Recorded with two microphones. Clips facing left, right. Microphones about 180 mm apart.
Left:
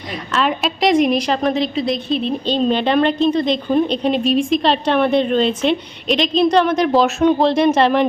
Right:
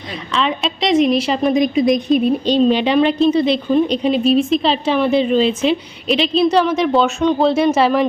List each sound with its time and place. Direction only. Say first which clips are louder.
0.3 s a woman's voice: left 1 dB; centre (ahead or behind)